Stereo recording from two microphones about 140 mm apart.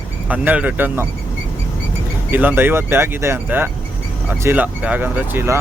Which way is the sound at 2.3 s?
15° right (ahead or behind).